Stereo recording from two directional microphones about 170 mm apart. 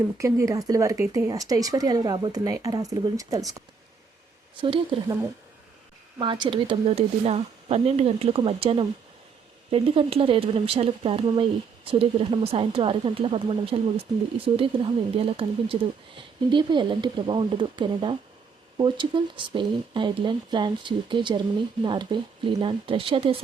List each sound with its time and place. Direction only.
0.0 s speech: 20° right (ahead or behind)
4.6 s speech: 30° right (ahead or behind)
6.1 s speech: 30° right (ahead or behind)